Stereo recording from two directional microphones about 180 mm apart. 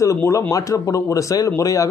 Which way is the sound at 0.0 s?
15° left (ahead or behind).